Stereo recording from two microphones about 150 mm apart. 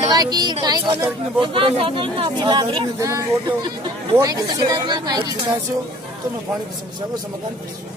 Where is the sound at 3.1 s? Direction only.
20° right (ahead or behind).